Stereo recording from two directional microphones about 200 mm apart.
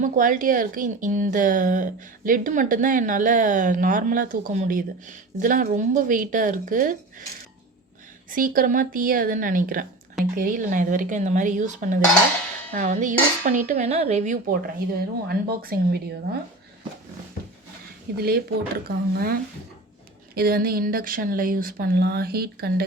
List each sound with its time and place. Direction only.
0.0 s a woman's voice: 40° right (ahead or behind)
8.3 s a woman's voice: 45° right (ahead or behind)
18.2 s speech: 50° right (ahead or behind)